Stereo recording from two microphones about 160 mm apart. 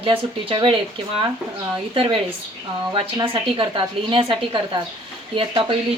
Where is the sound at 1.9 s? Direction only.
30° right (ahead or behind).